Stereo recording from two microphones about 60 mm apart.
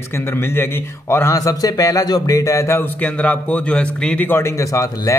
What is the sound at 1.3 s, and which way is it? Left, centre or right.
Speech, left.